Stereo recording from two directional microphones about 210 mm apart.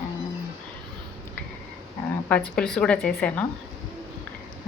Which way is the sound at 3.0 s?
45° left (ahead or behind).